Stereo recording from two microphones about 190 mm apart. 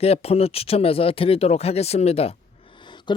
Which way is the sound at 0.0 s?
30° left (ahead or behind).